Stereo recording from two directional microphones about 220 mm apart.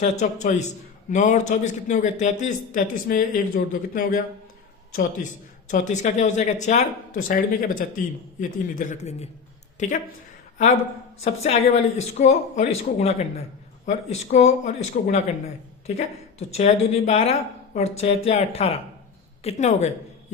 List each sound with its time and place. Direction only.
0.0 s a man's voice: 35° left (ahead or behind)
11.2 s a man's voice: 30° left (ahead or behind)